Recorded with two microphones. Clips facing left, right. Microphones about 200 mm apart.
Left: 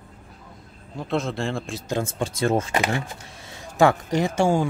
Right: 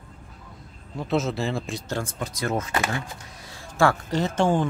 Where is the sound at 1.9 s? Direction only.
25° left (ahead or behind).